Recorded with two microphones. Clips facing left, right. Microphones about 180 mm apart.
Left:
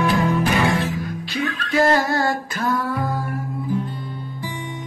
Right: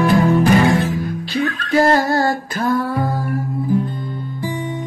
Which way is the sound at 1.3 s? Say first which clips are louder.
Right 5 dB; 35° right (ahead or behind).